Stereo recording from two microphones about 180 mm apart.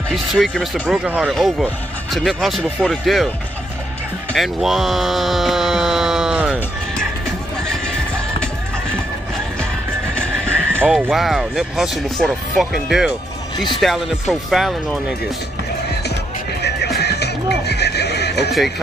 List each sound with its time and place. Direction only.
0.1 s speech: centre (ahead or behind)
4.3 s a sound: centre (ahead or behind)
10.8 s speech: 5° right (ahead or behind)
16.6 s neigh: 65° left (ahead or behind)